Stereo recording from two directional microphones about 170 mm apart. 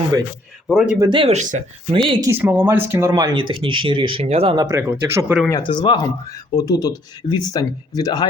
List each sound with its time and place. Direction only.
0.7 s speech: centre (ahead or behind)
0.9 s speech: 25° right (ahead or behind)
1.4 s speech: 45° right (ahead or behind)
1.9 s speech: 30° right (ahead or behind)
2.3 s speech: 10° right (ahead or behind); by 4.6 s 35° right (ahead or behind)
4.6 s speech: 15° right (ahead or behind)
5.5 s speech: 25° left (ahead or behind)